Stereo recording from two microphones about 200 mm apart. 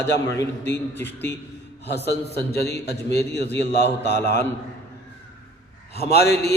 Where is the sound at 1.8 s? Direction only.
55° left (ahead or behind).